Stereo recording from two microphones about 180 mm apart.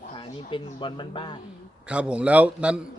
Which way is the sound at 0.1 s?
30° left (ahead or behind).